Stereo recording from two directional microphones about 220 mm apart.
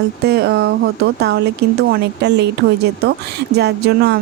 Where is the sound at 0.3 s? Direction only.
45° right (ahead or behind).